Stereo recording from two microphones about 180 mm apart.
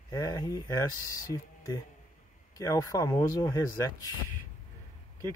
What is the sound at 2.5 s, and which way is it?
Speech, 20° left (ahead or behind).